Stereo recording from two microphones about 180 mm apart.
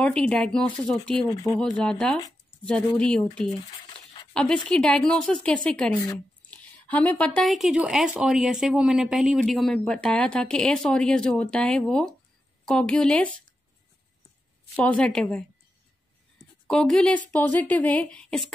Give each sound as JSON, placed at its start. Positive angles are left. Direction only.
{"t": 0.0, "sound": "speech", "side_deg": 5}
{"t": 1.3, "sound": "speech", "side_deg": 20}
{"t": 1.6, "sound": "speech", "side_deg": 5}
{"t": 14.8, "sound": "speech", "side_deg": 5}
{"t": 16.6, "sound": "a woman's voice", "side_deg": 5}